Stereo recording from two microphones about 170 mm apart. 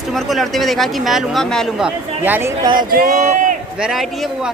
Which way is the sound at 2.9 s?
50° right (ahead or behind).